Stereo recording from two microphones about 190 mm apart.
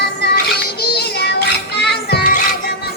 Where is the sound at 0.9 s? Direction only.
60° left (ahead or behind).